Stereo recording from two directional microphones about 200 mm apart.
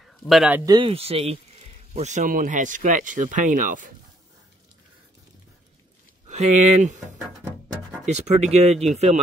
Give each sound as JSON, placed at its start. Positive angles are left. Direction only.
{"t": 0.0, "sound": "a sound", "side_deg": 0}
{"t": 0.7, "sound": "speech", "side_deg": -25}
{"t": 6.2, "sound": "speech", "side_deg": -35}